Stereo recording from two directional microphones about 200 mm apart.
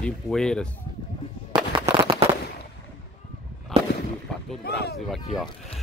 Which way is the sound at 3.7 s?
30° right (ahead or behind).